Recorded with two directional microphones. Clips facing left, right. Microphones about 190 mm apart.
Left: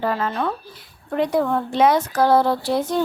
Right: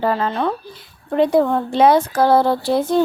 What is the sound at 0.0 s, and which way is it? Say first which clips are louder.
Speech: right 3 dB; 30° right (ahead or behind).